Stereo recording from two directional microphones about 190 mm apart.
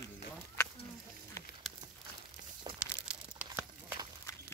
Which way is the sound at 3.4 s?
10° right (ahead or behind).